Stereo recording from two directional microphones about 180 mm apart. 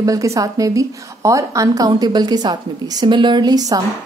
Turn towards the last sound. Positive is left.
turn(degrees=-20)  # may be behind; listen again after turning